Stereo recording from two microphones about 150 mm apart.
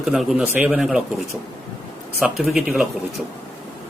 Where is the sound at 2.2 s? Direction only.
Centre (ahead or behind).